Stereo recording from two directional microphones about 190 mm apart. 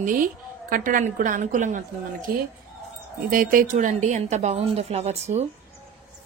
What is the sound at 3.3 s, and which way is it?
A woman's voice, 45° right (ahead or behind).